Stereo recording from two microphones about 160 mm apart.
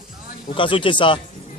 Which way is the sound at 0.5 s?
30° left (ahead or behind).